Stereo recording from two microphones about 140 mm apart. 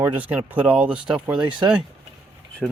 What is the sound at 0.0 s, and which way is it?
Speech, 10° right (ahead or behind).